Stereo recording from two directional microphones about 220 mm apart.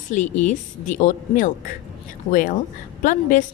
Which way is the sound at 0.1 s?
35° left (ahead or behind).